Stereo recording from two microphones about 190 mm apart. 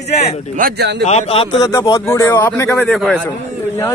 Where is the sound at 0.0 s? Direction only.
35° left (ahead or behind).